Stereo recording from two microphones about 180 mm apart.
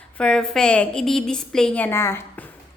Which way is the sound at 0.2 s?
5° left (ahead or behind).